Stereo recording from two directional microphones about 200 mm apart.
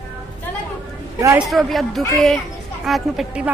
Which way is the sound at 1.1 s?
15° right (ahead or behind).